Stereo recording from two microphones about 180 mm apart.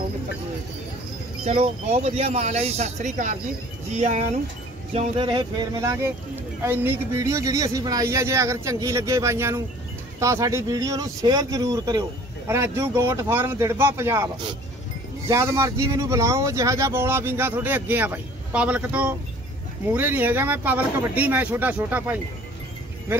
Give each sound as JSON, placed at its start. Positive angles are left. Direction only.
{"t": 1.4, "sound": "speech", "side_deg": -35}